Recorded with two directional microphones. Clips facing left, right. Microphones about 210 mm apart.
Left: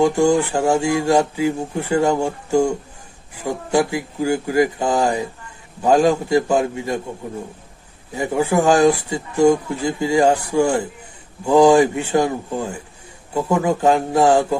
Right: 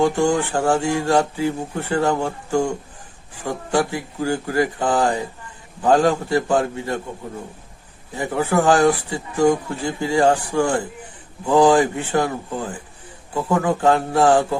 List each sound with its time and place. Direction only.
0.0 s speech: 10° left (ahead or behind)
3.4 s speech: 10° left (ahead or behind)
8.1 s speech: 15° left (ahead or behind)